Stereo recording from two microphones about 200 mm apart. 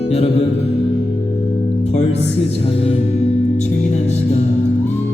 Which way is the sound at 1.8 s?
30° left (ahead or behind).